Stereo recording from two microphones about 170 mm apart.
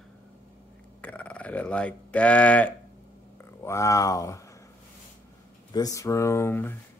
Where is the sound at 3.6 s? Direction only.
15° left (ahead or behind).